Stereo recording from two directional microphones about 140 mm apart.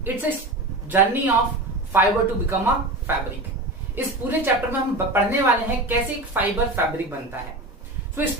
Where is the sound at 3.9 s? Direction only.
15° right (ahead or behind).